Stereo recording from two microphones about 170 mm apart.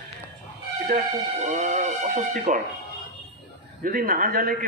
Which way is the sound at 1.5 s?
45° right (ahead or behind).